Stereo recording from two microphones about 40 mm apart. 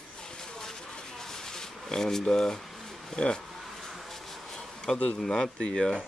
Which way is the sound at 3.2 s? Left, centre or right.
Left.